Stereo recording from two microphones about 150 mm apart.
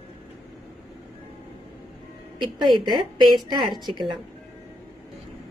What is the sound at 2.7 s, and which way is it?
Speech, 35° right (ahead or behind).